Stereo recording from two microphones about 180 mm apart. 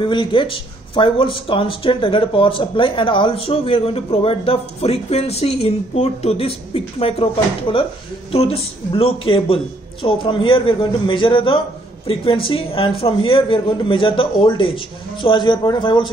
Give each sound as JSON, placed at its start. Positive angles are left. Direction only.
{"t": 0.0, "sound": "speech", "side_deg": 25}